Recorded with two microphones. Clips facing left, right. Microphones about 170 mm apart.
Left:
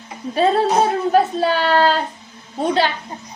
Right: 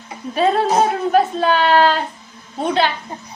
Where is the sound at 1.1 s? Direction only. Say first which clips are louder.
Right 1 dB; 40° left (ahead or behind).